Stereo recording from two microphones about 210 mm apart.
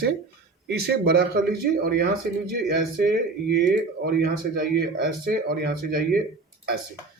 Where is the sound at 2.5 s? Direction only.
50° right (ahead or behind).